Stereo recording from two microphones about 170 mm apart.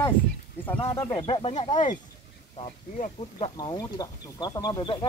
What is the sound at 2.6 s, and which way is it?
Speech, 35° left (ahead or behind).